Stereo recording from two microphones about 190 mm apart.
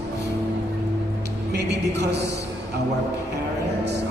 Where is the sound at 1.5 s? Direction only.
60° right (ahead or behind).